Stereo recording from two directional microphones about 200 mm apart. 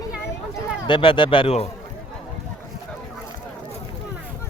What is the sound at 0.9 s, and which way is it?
Speech, 25° left (ahead or behind).